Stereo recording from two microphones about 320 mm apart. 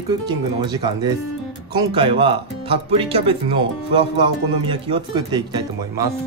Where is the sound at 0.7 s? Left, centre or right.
Centre.